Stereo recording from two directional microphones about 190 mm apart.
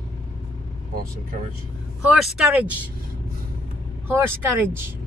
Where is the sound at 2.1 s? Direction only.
Centre (ahead or behind).